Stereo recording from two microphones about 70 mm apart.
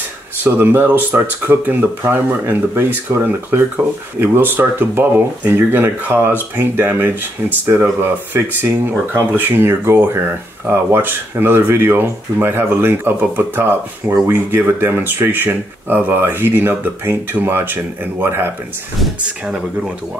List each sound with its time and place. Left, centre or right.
0.4 s speech: right
18.9 s speech: centre